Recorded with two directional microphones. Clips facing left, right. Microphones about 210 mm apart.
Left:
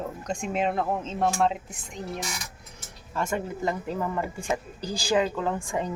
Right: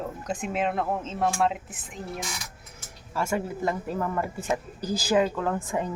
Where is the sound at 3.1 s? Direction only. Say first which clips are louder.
Right 1 dB; 10° right (ahead or behind).